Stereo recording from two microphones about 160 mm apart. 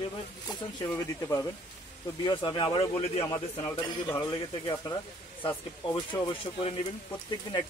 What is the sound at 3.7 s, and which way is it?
Speech, 25° left (ahead or behind).